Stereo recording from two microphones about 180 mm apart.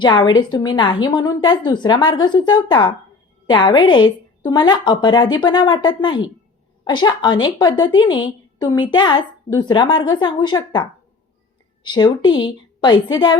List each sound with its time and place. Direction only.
0.0 s a woman's voice: 25° left (ahead or behind)